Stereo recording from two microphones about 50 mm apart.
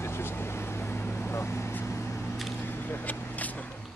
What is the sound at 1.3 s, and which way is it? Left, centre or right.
Vehicle, left.